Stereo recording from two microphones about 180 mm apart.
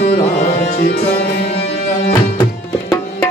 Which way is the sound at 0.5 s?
60° left (ahead or behind).